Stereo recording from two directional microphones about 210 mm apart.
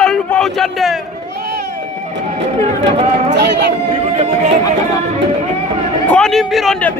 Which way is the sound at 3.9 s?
30° right (ahead or behind).